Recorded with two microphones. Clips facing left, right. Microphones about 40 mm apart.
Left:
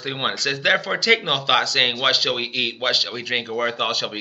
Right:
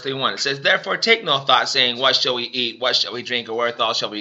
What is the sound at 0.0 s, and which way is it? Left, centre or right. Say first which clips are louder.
Speech: right 2 dB; centre.